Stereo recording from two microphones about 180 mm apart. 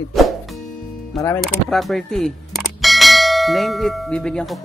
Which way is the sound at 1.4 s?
Centre (ahead or behind).